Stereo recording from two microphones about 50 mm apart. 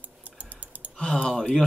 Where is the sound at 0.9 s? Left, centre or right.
Centre.